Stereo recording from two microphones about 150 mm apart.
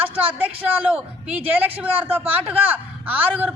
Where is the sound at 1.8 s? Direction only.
10° right (ahead or behind).